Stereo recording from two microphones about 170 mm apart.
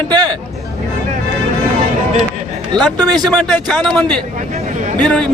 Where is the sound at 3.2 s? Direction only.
5° left (ahead or behind).